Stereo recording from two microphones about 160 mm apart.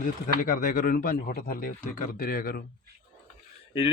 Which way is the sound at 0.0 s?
60° left (ahead or behind).